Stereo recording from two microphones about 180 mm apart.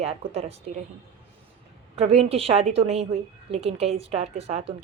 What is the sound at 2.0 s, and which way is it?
A woman's voice, 35° right (ahead or behind).